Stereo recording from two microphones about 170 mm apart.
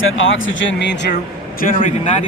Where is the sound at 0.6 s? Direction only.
90° left.